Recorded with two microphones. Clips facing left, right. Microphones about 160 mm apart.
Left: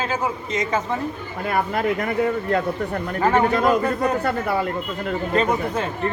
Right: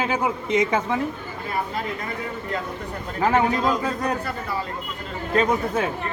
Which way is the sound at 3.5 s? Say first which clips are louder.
Left 4 dB; 60° left (ahead or behind).